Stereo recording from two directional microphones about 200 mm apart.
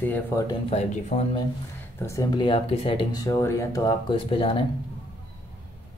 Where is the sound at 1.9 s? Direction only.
15° left (ahead or behind).